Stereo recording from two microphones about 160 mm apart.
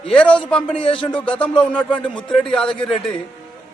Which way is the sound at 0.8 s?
30° left (ahead or behind).